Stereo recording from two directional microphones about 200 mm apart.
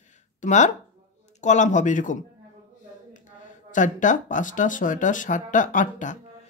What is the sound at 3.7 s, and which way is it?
Speech, 40° left (ahead or behind).